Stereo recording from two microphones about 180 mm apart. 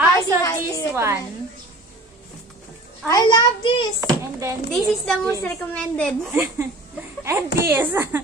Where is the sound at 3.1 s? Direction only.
25° left (ahead or behind).